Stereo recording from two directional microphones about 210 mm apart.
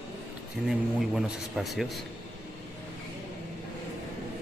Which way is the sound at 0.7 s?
Centre (ahead or behind).